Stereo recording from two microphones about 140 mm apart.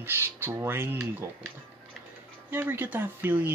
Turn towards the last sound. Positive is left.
turn(degrees=-15)  # may be behind; listen again after turning